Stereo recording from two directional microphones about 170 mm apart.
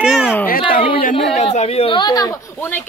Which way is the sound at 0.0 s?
5° right (ahead or behind).